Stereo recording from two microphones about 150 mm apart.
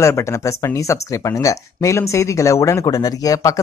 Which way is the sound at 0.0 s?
20° left (ahead or behind).